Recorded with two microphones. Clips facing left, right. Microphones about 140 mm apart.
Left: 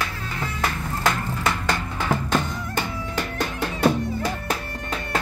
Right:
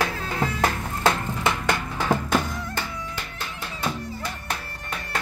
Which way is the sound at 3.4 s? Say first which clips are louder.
Left 8 dB; 70° left (ahead or behind).